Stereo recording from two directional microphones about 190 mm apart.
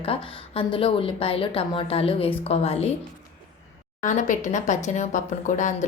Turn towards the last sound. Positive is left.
turn(degrees=40)  # may be behind; listen again after turning